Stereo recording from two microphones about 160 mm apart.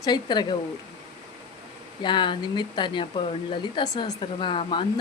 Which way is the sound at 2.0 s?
30° left (ahead or behind).